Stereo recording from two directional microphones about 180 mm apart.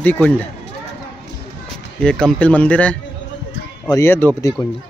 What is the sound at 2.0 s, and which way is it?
Speech, 5° left (ahead or behind).